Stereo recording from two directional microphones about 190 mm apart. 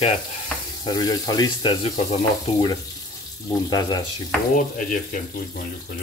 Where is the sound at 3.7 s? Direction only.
20° left (ahead or behind).